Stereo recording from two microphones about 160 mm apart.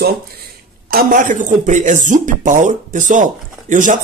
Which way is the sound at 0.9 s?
55° right (ahead or behind).